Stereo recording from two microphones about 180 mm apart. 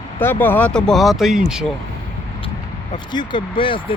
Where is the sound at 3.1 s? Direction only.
25° left (ahead or behind).